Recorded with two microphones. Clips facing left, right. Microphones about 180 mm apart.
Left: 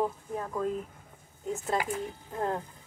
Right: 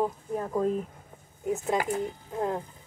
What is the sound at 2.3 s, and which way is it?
Speech, 10° right (ahead or behind).